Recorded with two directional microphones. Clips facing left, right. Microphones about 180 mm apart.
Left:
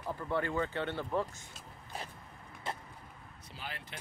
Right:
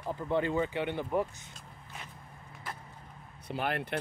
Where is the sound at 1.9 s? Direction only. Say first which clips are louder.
Left 5 dB; 35° left (ahead or behind).